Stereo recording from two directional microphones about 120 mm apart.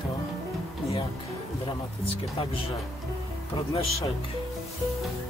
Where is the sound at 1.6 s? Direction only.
50° left (ahead or behind).